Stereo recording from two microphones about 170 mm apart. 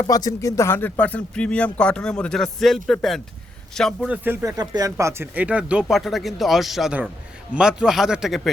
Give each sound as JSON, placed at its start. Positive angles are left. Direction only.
{"t": 0.0, "sound": "speech", "side_deg": 20}
{"t": 4.1, "sound": "speech", "side_deg": -10}